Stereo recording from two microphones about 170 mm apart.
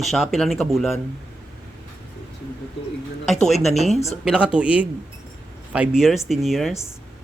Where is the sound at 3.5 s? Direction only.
Centre (ahead or behind).